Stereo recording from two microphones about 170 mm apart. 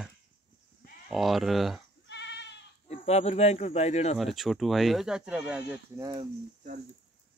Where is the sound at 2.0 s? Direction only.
90° left.